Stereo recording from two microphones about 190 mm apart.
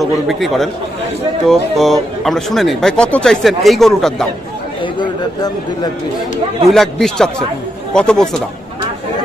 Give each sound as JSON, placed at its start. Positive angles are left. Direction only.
{"t": 0.0, "sound": "speech", "side_deg": 0}
{"t": 4.9, "sound": "speech", "side_deg": 25}
{"t": 6.7, "sound": "speech", "side_deg": 0}